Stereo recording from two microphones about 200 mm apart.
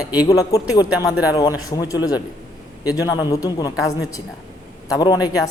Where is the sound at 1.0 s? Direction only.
5° right (ahead or behind).